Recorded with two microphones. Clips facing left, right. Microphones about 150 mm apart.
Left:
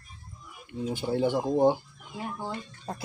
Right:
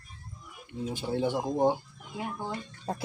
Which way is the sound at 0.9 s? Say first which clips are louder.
Left 3 dB; 25° left (ahead or behind).